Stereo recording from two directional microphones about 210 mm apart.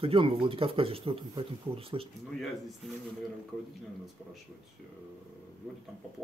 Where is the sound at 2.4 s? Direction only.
Centre (ahead or behind).